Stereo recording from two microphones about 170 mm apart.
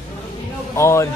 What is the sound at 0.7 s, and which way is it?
Speech, 15° left (ahead or behind).